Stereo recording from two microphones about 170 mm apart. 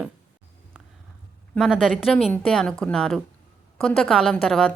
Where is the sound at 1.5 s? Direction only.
Centre (ahead or behind).